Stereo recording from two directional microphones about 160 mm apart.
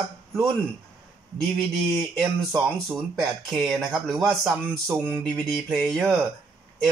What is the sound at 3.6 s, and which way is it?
Speech, centre (ahead or behind).